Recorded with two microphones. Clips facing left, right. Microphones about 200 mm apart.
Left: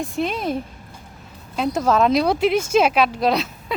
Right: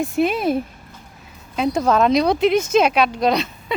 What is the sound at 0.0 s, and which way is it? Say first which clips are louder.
Speech: right 5 dB; 5° right (ahead or behind).